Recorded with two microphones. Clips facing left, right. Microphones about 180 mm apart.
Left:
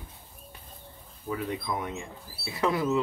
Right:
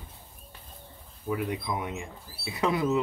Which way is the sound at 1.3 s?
10° right (ahead or behind).